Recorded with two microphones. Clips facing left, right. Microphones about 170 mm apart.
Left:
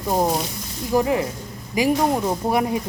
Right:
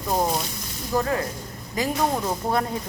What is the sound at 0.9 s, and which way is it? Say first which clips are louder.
Speech: left 4 dB; 15° left (ahead or behind).